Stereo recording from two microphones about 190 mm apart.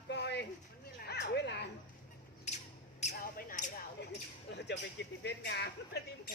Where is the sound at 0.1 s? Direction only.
65° left (ahead or behind).